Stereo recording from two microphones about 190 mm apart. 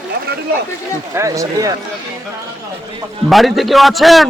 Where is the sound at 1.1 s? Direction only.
15° right (ahead or behind).